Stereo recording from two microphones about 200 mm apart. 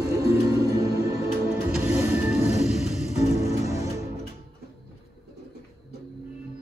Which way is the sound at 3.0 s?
35° left (ahead or behind).